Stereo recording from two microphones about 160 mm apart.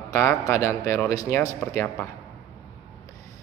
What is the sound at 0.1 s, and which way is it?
Speech, 15° left (ahead or behind).